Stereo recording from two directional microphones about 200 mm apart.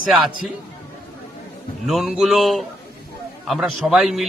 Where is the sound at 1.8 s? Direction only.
Centre (ahead or behind).